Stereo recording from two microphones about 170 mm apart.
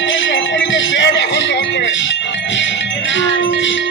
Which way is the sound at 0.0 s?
90° left.